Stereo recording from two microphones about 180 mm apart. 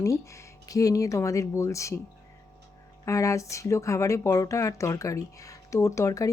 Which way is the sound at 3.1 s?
15° left (ahead or behind).